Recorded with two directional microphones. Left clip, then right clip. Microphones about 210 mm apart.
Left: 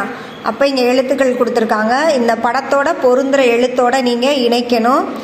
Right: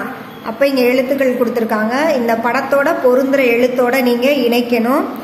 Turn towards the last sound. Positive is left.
turn(degrees=15)  # may be behind; listen again after turning